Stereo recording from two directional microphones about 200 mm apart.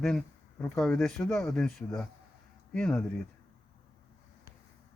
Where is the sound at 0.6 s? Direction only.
5° left (ahead or behind).